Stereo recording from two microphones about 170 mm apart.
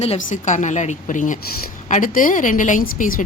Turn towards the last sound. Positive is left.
turn(degrees=50)  # may be behind; listen again after turning